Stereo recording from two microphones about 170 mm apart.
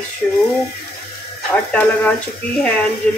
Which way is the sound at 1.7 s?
5° left (ahead or behind).